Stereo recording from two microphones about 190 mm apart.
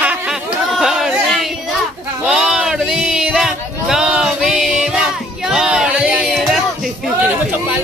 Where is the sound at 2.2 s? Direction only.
5° right (ahead or behind).